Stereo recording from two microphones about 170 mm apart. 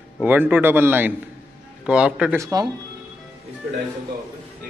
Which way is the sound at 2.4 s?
20° right (ahead or behind).